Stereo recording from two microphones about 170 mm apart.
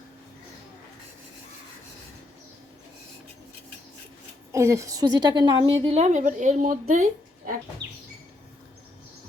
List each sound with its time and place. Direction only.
4.5 s a woman's voice: 20° right (ahead or behind)
5.8 s a woman's voice: 40° right (ahead or behind)